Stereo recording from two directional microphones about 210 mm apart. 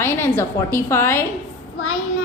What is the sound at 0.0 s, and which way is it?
A woman's voice, 10° left (ahead or behind).